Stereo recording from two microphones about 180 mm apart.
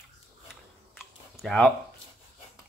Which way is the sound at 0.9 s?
Centre (ahead or behind).